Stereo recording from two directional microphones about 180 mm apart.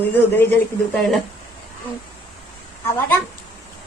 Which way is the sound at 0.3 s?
5° left (ahead or behind).